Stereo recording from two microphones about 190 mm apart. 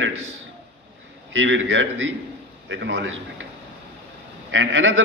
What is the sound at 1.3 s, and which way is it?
Speech, 85° right.